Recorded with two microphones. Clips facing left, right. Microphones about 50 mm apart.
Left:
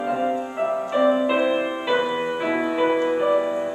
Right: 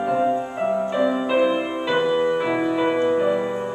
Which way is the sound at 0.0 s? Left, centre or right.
Centre.